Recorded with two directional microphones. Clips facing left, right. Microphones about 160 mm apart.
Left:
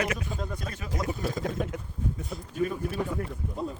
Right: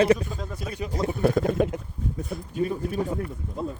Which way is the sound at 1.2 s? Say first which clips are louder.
Right 13 dB; 65° right (ahead or behind).